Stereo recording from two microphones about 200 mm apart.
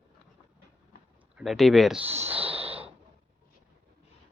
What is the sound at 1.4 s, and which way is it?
Speech, centre (ahead or behind).